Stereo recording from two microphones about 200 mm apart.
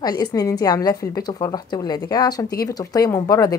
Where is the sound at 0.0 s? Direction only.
20° left (ahead or behind).